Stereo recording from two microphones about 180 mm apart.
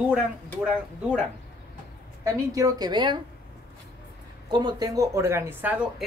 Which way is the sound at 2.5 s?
20° right (ahead or behind).